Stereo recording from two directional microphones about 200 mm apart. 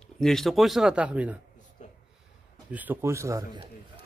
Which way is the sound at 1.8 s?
35° left (ahead or behind).